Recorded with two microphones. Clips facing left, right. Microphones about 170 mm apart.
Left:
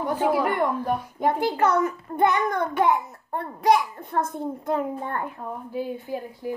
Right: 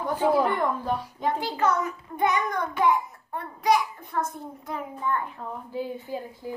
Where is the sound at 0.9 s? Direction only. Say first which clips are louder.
Left 4 dB; 55° left (ahead or behind).